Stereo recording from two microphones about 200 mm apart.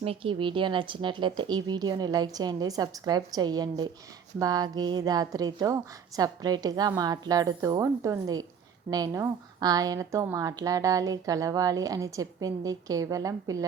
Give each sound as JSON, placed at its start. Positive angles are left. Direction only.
{"t": 0.0, "sound": "a woman's voice", "side_deg": -25}